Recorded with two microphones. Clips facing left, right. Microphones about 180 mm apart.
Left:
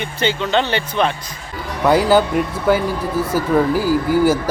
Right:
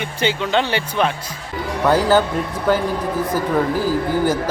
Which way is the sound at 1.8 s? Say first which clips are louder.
Left 2 dB; 10° left (ahead or behind).